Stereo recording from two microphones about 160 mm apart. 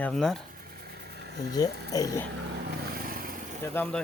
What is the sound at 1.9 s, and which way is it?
Speech, 20° left (ahead or behind).